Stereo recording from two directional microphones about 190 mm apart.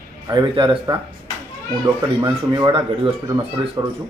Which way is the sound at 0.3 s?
25° right (ahead or behind).